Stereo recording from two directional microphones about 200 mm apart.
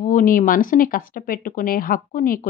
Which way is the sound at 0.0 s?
40° left (ahead or behind).